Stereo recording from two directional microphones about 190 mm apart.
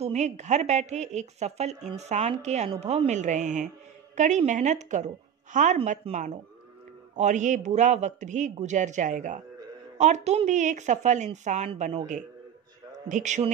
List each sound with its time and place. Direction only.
0.0 s a woman's voice: 35° right (ahead or behind)
5.8 s speech: 30° right (ahead or behind)
7.2 s a woman's voice: 40° right (ahead or behind)